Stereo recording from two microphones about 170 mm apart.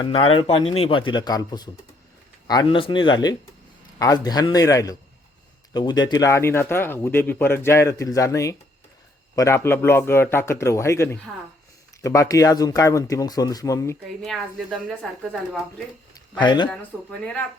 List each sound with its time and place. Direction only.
0.0 s speech: 30° left (ahead or behind)
14.2 s a woman's voice: centre (ahead or behind)
16.4 s speech: 25° left (ahead or behind)
16.6 s a woman's voice: 5° left (ahead or behind)